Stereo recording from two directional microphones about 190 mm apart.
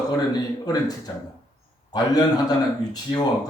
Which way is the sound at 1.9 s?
20° left (ahead or behind).